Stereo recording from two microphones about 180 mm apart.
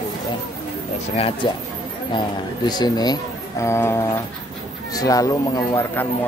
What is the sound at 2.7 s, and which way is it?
Speech, 20° left (ahead or behind).